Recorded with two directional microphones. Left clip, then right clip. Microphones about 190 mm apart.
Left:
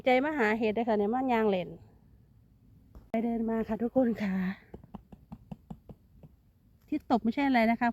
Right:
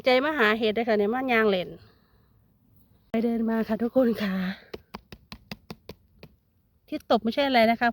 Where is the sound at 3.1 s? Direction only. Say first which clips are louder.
Right 5 dB; 20° right (ahead or behind).